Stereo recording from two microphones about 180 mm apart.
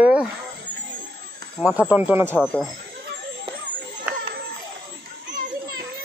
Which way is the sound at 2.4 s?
Centre (ahead or behind).